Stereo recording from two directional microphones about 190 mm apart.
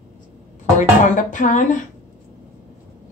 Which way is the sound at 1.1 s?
40° left (ahead or behind).